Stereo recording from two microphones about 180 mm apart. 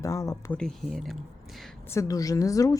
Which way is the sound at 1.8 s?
15° left (ahead or behind).